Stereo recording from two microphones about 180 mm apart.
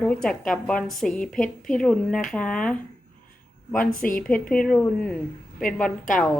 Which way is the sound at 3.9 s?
50° left (ahead or behind).